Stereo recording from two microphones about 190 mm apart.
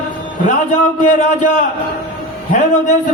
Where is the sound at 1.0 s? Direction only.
40° left (ahead or behind).